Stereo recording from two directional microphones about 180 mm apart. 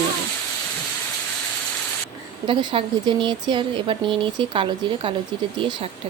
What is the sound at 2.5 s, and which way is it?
Speech, 25° right (ahead or behind).